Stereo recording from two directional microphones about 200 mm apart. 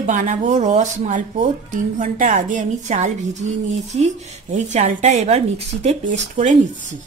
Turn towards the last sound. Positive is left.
turn(degrees=-40)  # may be behind; listen again after turning